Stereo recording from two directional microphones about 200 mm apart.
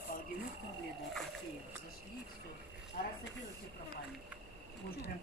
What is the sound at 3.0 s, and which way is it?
Speech, 55° left (ahead or behind).